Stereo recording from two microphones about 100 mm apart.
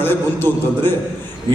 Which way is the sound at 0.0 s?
20° left (ahead or behind).